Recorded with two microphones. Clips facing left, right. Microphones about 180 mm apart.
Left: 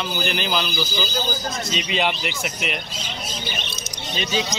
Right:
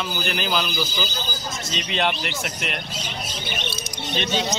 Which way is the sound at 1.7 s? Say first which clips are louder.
Even; 5° left (ahead or behind).